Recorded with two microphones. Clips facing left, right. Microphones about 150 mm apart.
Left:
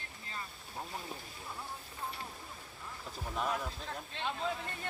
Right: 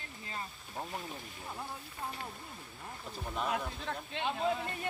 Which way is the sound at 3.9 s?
65° right (ahead or behind).